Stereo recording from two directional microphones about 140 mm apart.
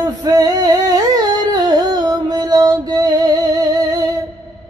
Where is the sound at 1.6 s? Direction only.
30° right (ahead or behind).